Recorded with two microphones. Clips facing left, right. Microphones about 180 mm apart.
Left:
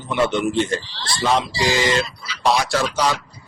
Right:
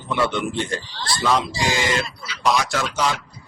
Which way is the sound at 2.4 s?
30° left (ahead or behind).